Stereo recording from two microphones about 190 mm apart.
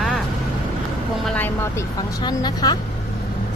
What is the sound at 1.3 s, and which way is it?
Vehicle, 10° left (ahead or behind).